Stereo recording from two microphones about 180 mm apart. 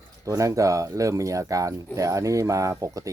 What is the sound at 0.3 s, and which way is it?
Speech, 20° right (ahead or behind).